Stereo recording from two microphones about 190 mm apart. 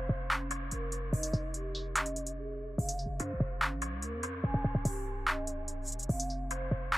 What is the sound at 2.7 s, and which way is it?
Music, centre (ahead or behind).